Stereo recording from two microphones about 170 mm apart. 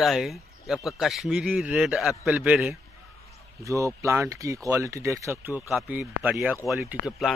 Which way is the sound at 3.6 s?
20° right (ahead or behind).